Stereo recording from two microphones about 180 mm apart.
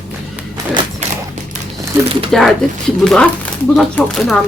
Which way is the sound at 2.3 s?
Centre (ahead or behind).